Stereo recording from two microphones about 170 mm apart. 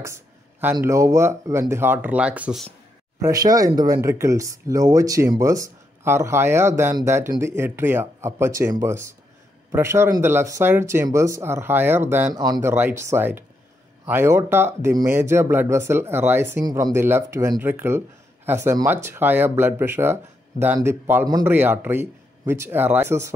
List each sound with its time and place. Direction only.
0.0 s a sound: 15° right (ahead or behind)
0.8 s speech: 15° right (ahead or behind)
3.2 s speech: 20° right (ahead or behind)